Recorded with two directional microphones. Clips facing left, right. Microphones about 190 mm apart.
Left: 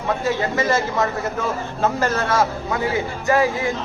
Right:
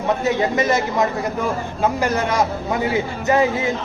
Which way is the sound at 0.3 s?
20° right (ahead or behind).